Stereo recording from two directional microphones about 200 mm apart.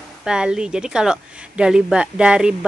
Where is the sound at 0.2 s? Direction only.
5° right (ahead or behind).